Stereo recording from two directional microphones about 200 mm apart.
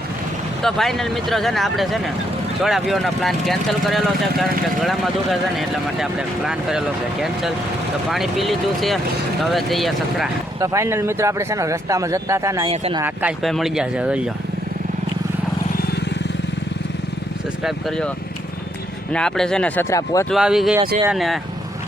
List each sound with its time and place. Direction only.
0.6 s speech: centre (ahead or behind)
10.6 s speech: 15° right (ahead or behind)
12.7 s speech: 30° right (ahead or behind)
13.0 s speech: 5° right (ahead or behind)
17.6 s speech: centre (ahead or behind)
19.1 s speech: 5° left (ahead or behind)
20.3 s speech: centre (ahead or behind)